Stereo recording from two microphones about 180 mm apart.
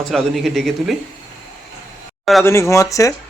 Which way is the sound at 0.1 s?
Centre (ahead or behind).